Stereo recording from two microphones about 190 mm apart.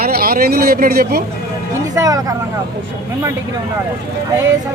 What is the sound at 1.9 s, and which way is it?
Speech, 20° right (ahead or behind).